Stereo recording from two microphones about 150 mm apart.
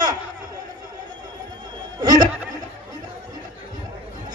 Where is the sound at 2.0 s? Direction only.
25° right (ahead or behind).